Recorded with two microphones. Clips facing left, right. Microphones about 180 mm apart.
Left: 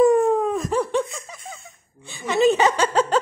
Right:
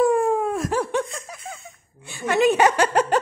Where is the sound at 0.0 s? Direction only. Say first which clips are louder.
Left 3 dB; 5° right (ahead or behind).